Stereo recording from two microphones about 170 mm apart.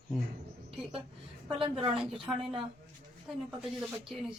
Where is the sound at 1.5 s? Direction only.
30° right (ahead or behind).